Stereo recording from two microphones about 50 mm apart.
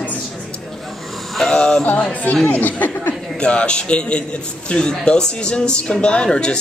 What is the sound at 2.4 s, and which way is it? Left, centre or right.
Speech, left.